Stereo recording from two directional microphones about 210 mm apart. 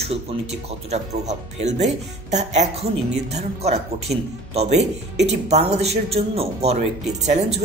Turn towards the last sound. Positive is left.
turn(degrees=-35)  # may be behind; listen again after turning